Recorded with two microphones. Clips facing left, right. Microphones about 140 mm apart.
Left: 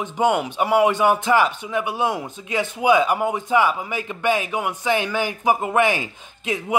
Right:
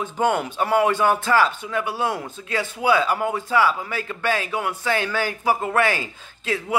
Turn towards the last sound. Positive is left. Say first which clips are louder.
# left 1 dB
turn(degrees=15)  # may be behind; listen again after turning